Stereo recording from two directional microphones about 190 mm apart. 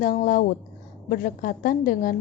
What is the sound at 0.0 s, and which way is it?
A woman's voice, 45° left (ahead or behind).